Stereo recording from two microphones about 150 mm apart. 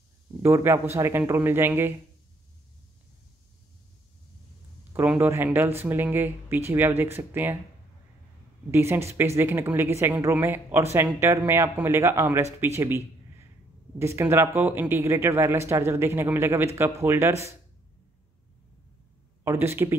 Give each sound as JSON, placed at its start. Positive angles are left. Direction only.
{"t": 0.4, "sound": "a woman's voice", "side_deg": -15}
{"t": 4.9, "sound": "a woman's voice", "side_deg": -10}
{"t": 8.7, "sound": "a woman's voice", "side_deg": -15}
{"t": 19.4, "sound": "a woman's voice", "side_deg": -15}